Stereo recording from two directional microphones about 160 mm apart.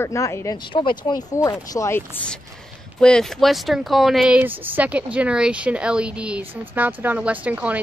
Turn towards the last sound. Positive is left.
turn(degrees=-10)  # may be behind; listen again after turning